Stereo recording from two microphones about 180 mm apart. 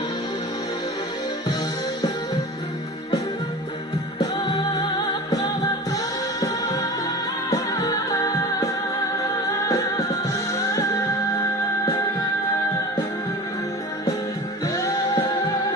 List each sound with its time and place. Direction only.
4.2 s music: 20° left (ahead or behind)
6.4 s music: 20° left (ahead or behind)
14.7 s music: 20° left (ahead or behind)